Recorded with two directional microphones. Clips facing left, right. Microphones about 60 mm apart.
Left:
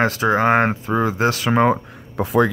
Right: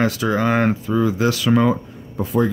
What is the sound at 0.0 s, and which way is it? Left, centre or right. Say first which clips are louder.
Speech: left 2 dB; left.